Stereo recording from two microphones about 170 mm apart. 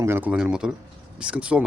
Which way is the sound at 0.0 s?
10° right (ahead or behind).